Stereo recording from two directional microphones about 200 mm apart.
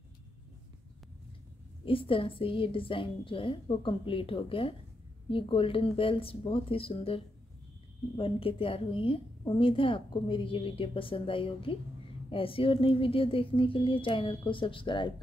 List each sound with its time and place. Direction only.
1.9 s a woman's voice: 25° left (ahead or behind)